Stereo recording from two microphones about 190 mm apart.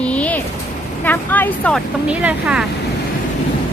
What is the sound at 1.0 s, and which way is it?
Speech, 10° left (ahead or behind).